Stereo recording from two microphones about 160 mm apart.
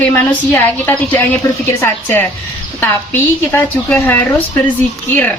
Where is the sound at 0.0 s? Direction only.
15° left (ahead or behind).